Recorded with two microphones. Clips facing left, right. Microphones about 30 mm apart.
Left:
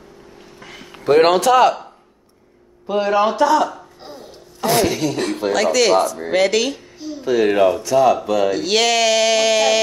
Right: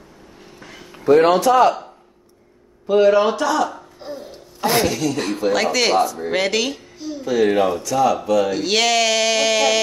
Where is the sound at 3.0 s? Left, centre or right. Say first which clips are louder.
Even; centre.